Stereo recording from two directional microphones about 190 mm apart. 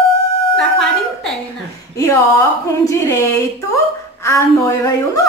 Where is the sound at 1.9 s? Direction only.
15° left (ahead or behind).